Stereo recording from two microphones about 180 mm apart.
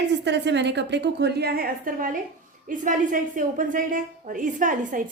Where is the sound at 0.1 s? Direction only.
75° right (ahead or behind).